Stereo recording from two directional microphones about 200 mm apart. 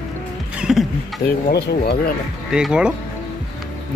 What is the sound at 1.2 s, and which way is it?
Speech, 50° left (ahead or behind).